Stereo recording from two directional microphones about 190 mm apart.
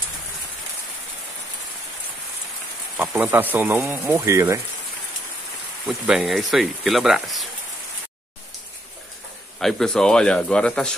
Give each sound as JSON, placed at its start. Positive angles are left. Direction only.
{"t": 3.0, "sound": "speech", "side_deg": -5}
{"t": 5.9, "sound": "speech", "side_deg": 0}
{"t": 9.6, "sound": "speech", "side_deg": 0}